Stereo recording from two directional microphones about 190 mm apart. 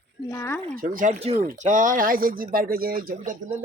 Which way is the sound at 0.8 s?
45° right (ahead or behind).